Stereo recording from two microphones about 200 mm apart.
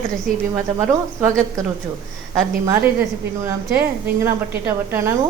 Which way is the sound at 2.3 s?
10° right (ahead or behind).